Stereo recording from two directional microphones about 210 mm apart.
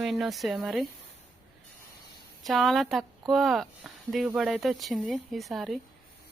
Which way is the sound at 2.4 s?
Centre (ahead or behind).